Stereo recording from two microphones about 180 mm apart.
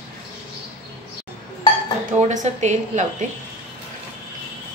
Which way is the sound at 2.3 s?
40° right (ahead or behind).